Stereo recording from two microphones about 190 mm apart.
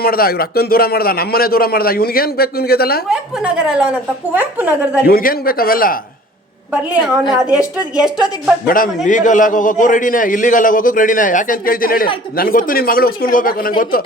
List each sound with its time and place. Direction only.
0.0 s a man's voice: 50° left (ahead or behind)
3.1 s a woman's voice: 5° right (ahead or behind)
5.0 s a man's voice: 50° left (ahead or behind)
6.9 s a woman's voice: 5° right (ahead or behind)
8.6 s a man's voice: 45° left (ahead or behind)